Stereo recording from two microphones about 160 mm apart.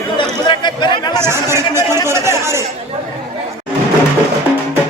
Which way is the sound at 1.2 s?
15° right (ahead or behind).